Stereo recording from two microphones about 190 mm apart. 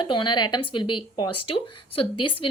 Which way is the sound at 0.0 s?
25° left (ahead or behind).